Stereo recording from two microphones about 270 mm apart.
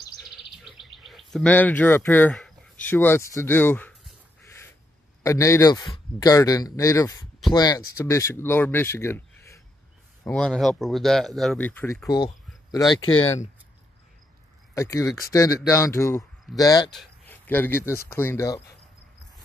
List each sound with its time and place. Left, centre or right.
0.7 s bird: centre
5.2 s speech: centre
14.7 s speech: centre